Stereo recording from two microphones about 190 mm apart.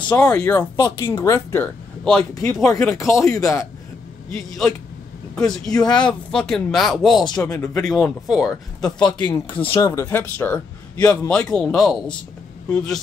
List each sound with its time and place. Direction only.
0.2 s speech: 5° left (ahead or behind)
4.3 s speech: centre (ahead or behind)
5.7 s speech: 20° left (ahead or behind)
6.0 s speech: 5° left (ahead or behind)
7.5 s speech: 15° left (ahead or behind)
7.9 s speech: centre (ahead or behind)
9.2 s speech: 20° left (ahead or behind); by 13.0 s 5° left (ahead or behind)